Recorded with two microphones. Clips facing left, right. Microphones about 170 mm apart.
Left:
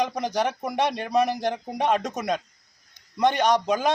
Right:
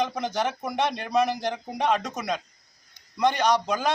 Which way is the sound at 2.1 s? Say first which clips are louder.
Left 3 dB; 45° left (ahead or behind).